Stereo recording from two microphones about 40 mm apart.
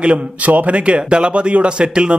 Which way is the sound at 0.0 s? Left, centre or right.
Right.